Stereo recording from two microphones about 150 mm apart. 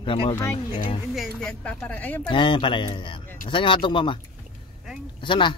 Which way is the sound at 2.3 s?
35° left (ahead or behind).